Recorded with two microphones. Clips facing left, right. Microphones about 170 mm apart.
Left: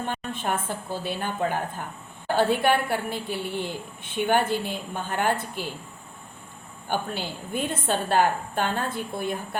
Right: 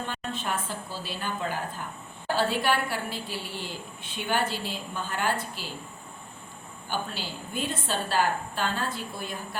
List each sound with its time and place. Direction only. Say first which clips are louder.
0.1 s a woman's voice: left 3 dB; 55° left (ahead or behind)
6.8 s a woman's voice: left 4 dB; 55° left (ahead or behind)